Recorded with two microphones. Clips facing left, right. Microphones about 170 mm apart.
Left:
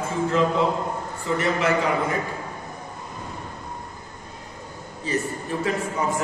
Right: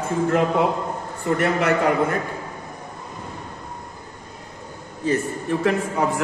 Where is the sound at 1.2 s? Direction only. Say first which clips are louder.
Right 3 dB; 60° right (ahead or behind).